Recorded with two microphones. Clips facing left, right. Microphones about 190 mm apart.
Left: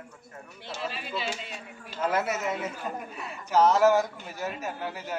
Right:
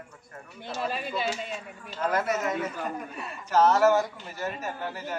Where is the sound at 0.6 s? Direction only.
50° right (ahead or behind).